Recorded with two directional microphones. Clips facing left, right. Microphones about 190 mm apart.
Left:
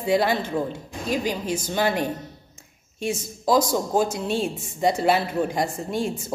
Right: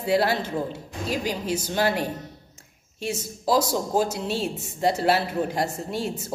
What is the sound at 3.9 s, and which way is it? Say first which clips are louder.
A woman's voice: left 1 dB; 5° right (ahead or behind).